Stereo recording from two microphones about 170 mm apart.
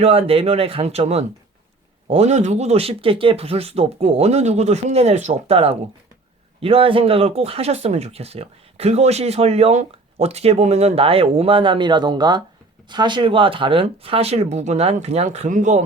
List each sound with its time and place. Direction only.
0.0 s speech: 35° right (ahead or behind)